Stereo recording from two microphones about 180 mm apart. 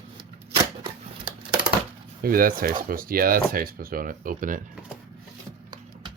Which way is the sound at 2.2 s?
55° right (ahead or behind).